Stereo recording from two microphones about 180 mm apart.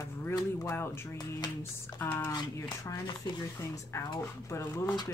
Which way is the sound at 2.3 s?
20° left (ahead or behind).